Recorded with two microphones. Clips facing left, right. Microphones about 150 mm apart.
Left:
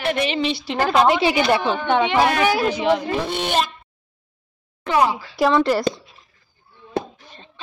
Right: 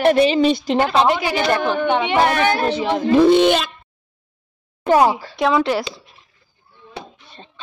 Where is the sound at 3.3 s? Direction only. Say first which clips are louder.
Right 8 dB; 90° right.